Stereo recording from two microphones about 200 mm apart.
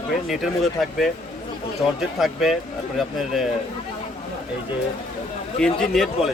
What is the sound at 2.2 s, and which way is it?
Speech, centre (ahead or behind).